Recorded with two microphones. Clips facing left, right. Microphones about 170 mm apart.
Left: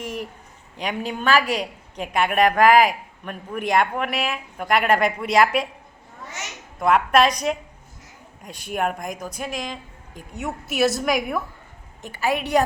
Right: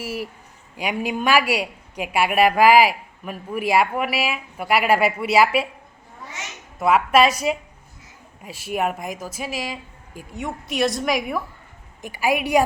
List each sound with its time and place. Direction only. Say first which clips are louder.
0.0 s a woman's voice: right 1 dB; 5° right (ahead or behind)
6.7 s speech: right 1 dB; 5° right (ahead or behind)
12.0 s a woman's voice: right 2 dB; 10° right (ahead or behind)